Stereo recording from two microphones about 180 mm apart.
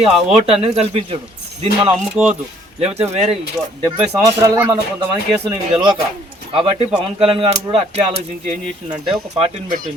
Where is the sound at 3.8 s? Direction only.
20° right (ahead or behind).